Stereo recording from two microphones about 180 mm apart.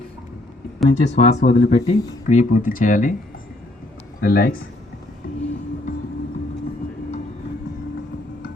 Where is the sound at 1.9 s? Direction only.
40° left (ahead or behind).